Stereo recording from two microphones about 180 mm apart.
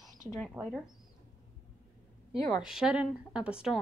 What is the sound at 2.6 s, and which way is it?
Speech, 5° right (ahead or behind).